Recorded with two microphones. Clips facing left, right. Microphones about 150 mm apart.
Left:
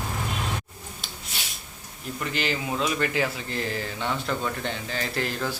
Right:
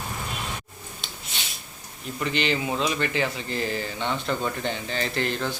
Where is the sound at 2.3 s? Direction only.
5° left (ahead or behind).